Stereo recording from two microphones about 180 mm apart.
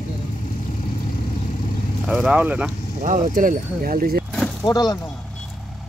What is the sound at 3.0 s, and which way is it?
Speech, 45° right (ahead or behind).